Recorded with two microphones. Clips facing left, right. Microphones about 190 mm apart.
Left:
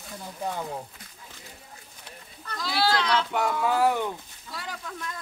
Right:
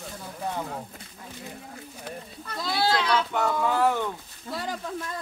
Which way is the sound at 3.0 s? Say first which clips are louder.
Right 1 dB; 5° right (ahead or behind).